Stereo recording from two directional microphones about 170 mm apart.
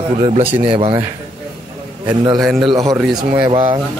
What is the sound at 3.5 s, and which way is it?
Speech, 35° right (ahead or behind).